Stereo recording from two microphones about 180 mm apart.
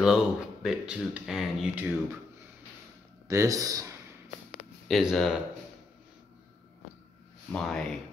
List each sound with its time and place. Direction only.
0.0 s speech: centre (ahead or behind)
3.3 s speech: 20° right (ahead or behind)
4.8 s speech: centre (ahead or behind)
7.5 s speech: 5° left (ahead or behind)